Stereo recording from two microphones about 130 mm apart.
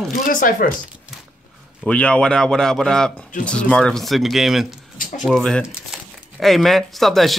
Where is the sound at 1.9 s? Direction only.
10° left (ahead or behind).